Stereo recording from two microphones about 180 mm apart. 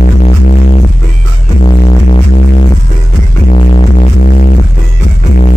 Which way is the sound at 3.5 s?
40° left (ahead or behind).